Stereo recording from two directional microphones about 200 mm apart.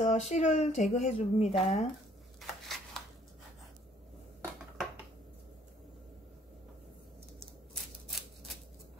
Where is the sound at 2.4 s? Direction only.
Centre (ahead or behind).